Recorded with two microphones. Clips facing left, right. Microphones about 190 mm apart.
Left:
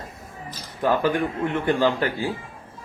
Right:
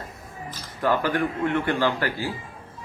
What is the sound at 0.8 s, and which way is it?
A man's voice, 20° left (ahead or behind).